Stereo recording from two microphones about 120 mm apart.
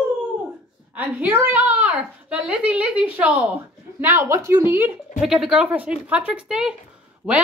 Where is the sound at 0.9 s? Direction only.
15° right (ahead or behind).